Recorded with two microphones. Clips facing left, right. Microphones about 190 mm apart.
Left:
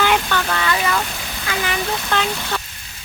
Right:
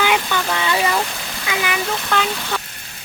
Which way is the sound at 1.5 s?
10° right (ahead or behind).